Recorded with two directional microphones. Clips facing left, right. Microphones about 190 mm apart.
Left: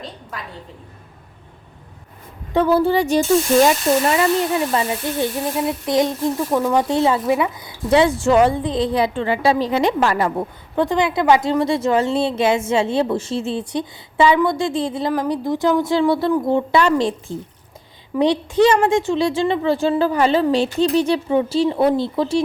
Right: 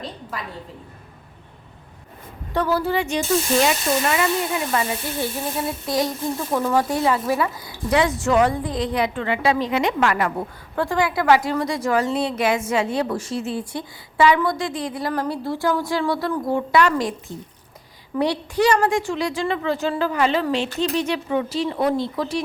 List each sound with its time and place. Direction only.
0.0 s a sound: centre (ahead or behind)
2.5 s a woman's voice: 20° left (ahead or behind)
6.5 s speech: 10° left (ahead or behind)
6.8 s a woman's voice: 25° left (ahead or behind)
15.1 s a woman's voice: 15° left (ahead or behind)